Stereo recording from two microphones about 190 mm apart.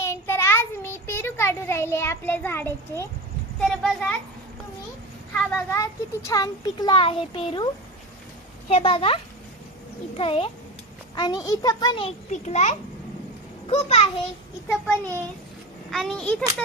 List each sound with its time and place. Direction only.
0.0 s child singing: 15° left (ahead or behind)
3.6 s a child's voice: centre (ahead or behind)
5.3 s speech: 10° left (ahead or behind); by 7.7 s 25° left (ahead or behind)
8.7 s a child's voice: 30° left (ahead or behind)
14.7 s a child's voice: 10° left (ahead or behind)